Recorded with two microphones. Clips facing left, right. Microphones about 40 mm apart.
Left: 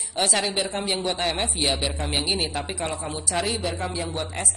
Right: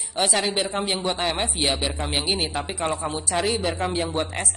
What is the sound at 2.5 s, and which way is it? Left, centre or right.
Speech, right.